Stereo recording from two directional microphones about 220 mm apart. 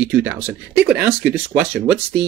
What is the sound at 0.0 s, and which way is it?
Speech, 10° right (ahead or behind).